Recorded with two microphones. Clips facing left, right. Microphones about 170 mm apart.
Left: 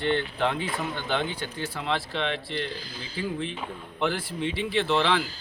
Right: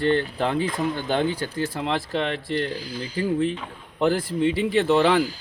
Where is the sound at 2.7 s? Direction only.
10° right (ahead or behind).